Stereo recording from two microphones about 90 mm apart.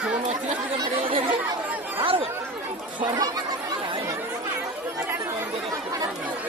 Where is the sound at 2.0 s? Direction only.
90° right.